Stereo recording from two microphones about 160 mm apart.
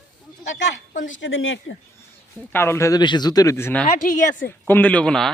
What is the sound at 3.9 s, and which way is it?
Speech, 55° left (ahead or behind).